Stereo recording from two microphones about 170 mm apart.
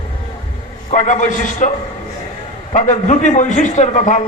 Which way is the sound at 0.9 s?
45° left (ahead or behind).